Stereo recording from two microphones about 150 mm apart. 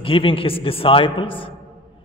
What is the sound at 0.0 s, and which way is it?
A man's voice, 35° left (ahead or behind).